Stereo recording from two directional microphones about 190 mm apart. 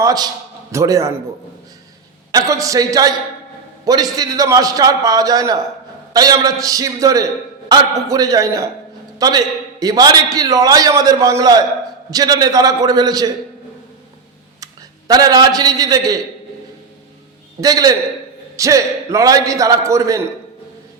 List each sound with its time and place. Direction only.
0.0 s a man's voice: 20° right (ahead or behind)
2.3 s a man's voice: 20° right (ahead or behind)
14.6 s a man's voice: 20° right (ahead or behind)
17.6 s a man's voice: 20° right (ahead or behind)